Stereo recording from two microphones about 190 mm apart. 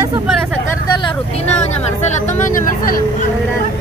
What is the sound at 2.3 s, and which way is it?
Speech, 45° left (ahead or behind).